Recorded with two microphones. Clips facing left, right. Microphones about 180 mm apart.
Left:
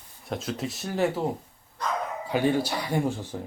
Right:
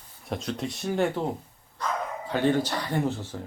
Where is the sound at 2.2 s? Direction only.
10° left (ahead or behind).